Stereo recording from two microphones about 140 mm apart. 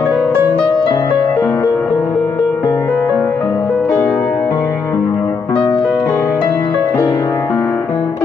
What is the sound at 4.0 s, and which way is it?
Music, 10° left (ahead or behind).